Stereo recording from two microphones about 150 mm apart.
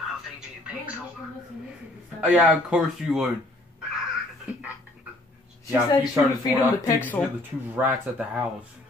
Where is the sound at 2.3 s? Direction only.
5° right (ahead or behind).